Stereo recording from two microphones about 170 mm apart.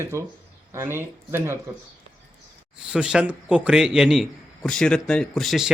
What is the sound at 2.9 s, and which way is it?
A man's voice, 5° right (ahead or behind).